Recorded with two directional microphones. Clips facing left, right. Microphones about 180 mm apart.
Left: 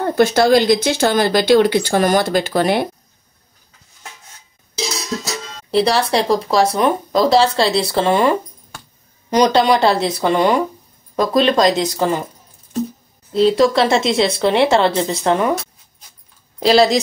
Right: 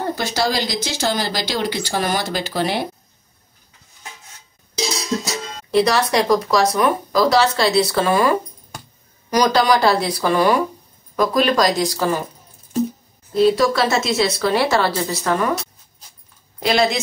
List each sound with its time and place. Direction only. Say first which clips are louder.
0.1 s speech: left 12 dB; 55° left (ahead or behind)
5.7 s speech: left 1 dB; 30° left (ahead or behind)
13.3 s speech: left 2 dB; 25° left (ahead or behind)
16.5 s speech: left 5 dB; 30° left (ahead or behind)